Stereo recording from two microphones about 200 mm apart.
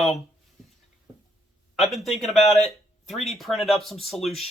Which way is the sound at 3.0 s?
Centre (ahead or behind).